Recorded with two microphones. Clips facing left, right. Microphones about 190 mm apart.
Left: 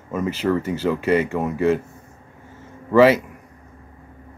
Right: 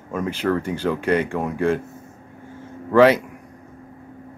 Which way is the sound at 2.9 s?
5° left (ahead or behind).